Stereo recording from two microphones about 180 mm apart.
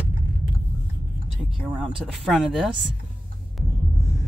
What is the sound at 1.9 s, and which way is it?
Speech, 5° right (ahead or behind).